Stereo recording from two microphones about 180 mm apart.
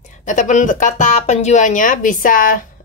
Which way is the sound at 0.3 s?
45° left (ahead or behind).